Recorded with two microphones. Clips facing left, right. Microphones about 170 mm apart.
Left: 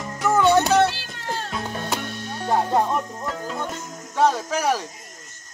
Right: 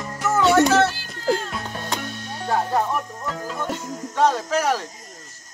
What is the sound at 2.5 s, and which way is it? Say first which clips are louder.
Music: left 1 dB; 20° left (ahead or behind).